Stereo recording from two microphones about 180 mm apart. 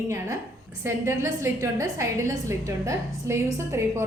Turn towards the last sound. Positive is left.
turn(degrees=-15)  # may be behind; listen again after turning